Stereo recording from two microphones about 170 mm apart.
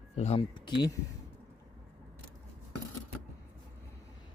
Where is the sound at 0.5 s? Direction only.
25° left (ahead or behind).